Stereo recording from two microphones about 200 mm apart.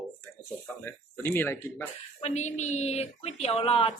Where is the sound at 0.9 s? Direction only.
10° left (ahead or behind).